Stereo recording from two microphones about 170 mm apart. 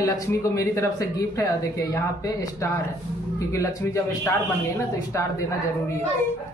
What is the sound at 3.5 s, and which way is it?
Speech, 15° left (ahead or behind).